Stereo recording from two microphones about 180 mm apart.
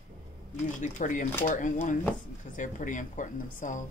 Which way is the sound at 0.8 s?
45° left (ahead or behind).